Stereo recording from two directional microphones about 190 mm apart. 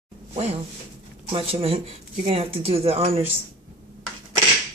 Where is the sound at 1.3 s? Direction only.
30° right (ahead or behind).